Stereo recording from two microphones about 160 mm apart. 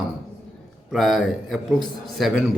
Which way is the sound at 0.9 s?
Centre (ahead or behind).